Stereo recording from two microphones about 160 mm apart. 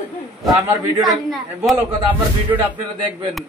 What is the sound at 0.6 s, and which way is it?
Speech, 15° right (ahead or behind).